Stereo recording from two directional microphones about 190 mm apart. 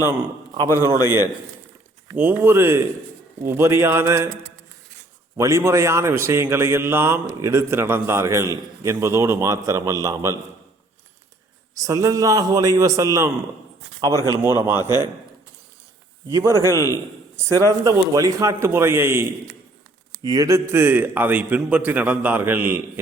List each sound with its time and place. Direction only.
0.0 s a man's voice: 20° right (ahead or behind)
5.4 s a man's voice: 15° right (ahead or behind)
11.8 s a man's voice: 20° right (ahead or behind)
16.2 s a man's voice: 15° right (ahead or behind)